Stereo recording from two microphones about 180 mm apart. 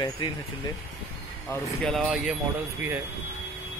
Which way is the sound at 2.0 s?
5° right (ahead or behind).